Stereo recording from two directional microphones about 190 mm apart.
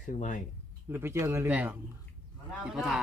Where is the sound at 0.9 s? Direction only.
10° right (ahead or behind).